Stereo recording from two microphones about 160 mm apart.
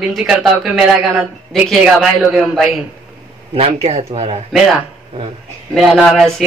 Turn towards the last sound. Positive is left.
turn(degrees=0)  # may be behind; listen again after turning